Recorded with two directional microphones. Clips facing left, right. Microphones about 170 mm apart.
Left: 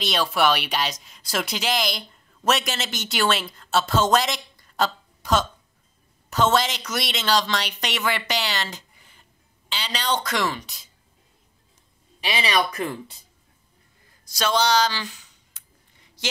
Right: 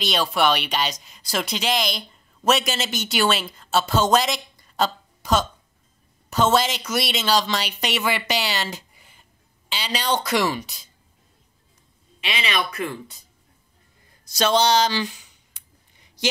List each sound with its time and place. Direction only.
0.0 s a woman's voice: centre (ahead or behind)
12.4 s speech: 35° left (ahead or behind)
14.2 s speech: 25° right (ahead or behind)